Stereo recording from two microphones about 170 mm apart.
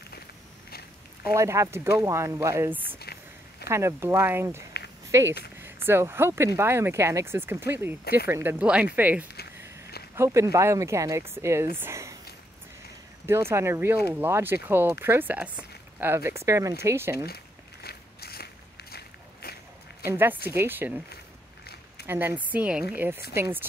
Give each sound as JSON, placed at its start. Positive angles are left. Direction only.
{"t": 1.3, "sound": "speech", "side_deg": -20}
{"t": 3.0, "sound": "a sound", "side_deg": 70}
{"t": 3.6, "sound": "speech", "side_deg": -15}
{"t": 5.9, "sound": "speech", "side_deg": -15}
{"t": 11.7, "sound": "a sound", "side_deg": -15}
{"t": 13.3, "sound": "speech", "side_deg": -15}
{"t": 17.8, "sound": "walk", "side_deg": 65}
{"t": 20.1, "sound": "speech", "side_deg": -15}
{"t": 22.0, "sound": "speech", "side_deg": -15}